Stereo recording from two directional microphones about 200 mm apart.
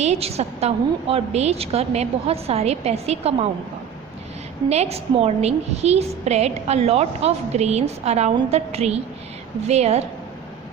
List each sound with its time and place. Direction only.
0.0 s a woman's voice: 30° right (ahead or behind)
4.7 s a woman's voice: 30° right (ahead or behind)